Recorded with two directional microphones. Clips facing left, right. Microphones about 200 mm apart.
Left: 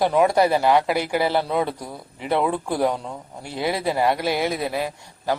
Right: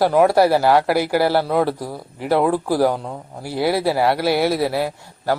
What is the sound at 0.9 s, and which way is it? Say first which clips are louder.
Speech: right 4 dB; 5° right (ahead or behind).